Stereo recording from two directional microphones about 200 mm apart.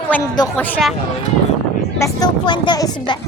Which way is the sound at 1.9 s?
15° left (ahead or behind).